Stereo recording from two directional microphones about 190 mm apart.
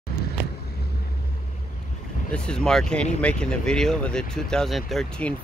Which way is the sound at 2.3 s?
5° left (ahead or behind).